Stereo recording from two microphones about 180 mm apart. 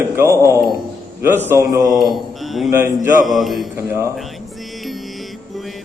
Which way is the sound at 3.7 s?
15° right (ahead or behind).